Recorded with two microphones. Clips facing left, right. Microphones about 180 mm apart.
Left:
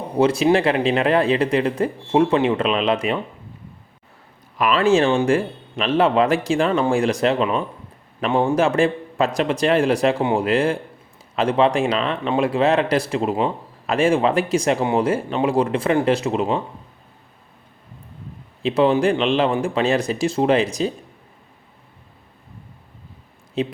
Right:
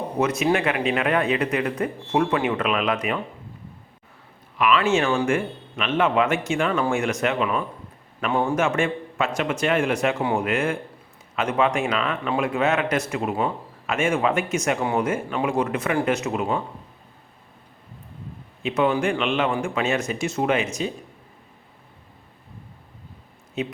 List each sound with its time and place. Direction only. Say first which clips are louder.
0.2 s speech: left 6 dB; 30° left (ahead or behind)
4.5 s speech: left 4 dB; 40° left (ahead or behind)
18.6 s speech: left 5 dB; 30° left (ahead or behind)
23.6 s speech: left 5 dB; 30° left (ahead or behind)